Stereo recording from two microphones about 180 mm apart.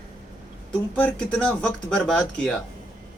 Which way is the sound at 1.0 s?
5° left (ahead or behind).